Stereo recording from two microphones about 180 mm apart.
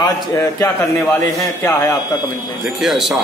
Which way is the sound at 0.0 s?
15° left (ahead or behind).